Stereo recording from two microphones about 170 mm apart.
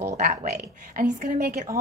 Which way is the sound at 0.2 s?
50° right (ahead or behind).